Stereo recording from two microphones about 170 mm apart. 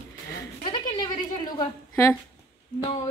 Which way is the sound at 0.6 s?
30° left (ahead or behind).